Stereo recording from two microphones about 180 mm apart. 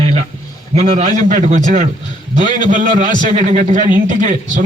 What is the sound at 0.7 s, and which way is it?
A man's voice, 35° right (ahead or behind).